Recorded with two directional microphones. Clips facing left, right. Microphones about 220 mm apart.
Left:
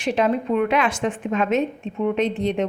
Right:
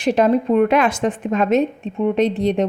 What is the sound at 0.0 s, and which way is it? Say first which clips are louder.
A woman's voice: right 5 dB; 40° right (ahead or behind).